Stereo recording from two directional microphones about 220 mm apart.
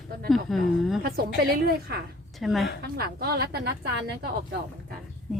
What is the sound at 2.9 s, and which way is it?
Speech, 45° right (ahead or behind).